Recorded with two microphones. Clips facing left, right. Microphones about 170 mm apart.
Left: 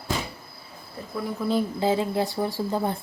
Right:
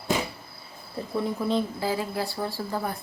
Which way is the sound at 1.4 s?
5° left (ahead or behind).